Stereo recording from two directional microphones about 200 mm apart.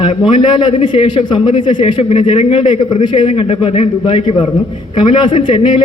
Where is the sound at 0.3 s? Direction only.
25° left (ahead or behind).